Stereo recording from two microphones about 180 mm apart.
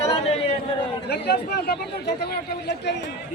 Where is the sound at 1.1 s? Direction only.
65° left (ahead or behind).